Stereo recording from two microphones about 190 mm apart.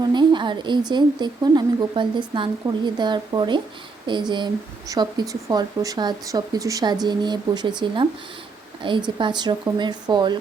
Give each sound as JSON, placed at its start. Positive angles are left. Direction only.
{"t": 0.0, "sound": "speech", "side_deg": -25}